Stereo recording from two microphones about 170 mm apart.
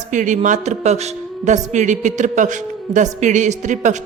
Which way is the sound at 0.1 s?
45° right (ahead or behind).